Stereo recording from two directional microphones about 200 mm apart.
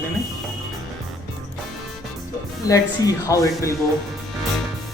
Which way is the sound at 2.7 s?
15° left (ahead or behind).